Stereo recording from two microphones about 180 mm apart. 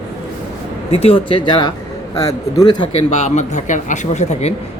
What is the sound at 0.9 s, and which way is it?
Speech, 30° left (ahead or behind).